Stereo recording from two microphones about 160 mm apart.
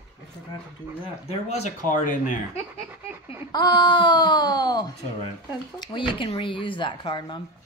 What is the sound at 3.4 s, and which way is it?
Speech, 25° left (ahead or behind).